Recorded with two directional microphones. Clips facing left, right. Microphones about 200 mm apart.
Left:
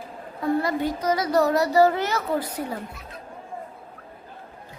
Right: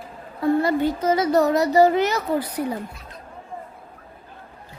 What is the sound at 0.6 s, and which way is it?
A child's voice, 25° right (ahead or behind).